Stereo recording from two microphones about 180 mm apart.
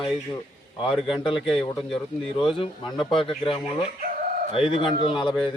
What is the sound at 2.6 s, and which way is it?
A man's voice, 25° left (ahead or behind).